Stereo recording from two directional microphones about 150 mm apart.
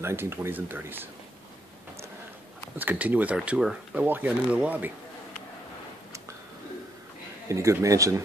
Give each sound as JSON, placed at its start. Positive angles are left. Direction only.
{"t": 0.0, "sound": "speech", "side_deg": -15}
{"t": 2.8, "sound": "speech", "side_deg": -10}
{"t": 7.4, "sound": "speech", "side_deg": -20}